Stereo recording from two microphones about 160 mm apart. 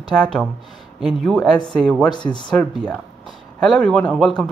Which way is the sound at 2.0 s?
30° left (ahead or behind).